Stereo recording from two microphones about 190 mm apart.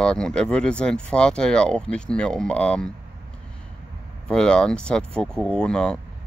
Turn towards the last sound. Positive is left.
turn(degrees=5)  # may be behind; listen again after turning